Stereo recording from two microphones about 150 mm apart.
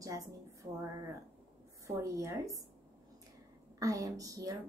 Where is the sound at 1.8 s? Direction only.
20° right (ahead or behind).